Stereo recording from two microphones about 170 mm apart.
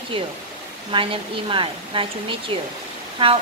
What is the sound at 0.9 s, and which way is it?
Speech, 30° right (ahead or behind).